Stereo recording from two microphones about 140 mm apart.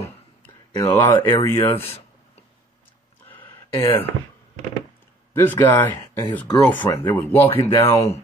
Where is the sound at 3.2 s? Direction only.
15° left (ahead or behind).